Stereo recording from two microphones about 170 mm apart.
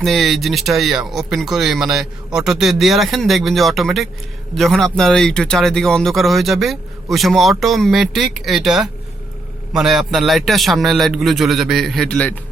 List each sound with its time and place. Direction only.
0.0 s speech: centre (ahead or behind)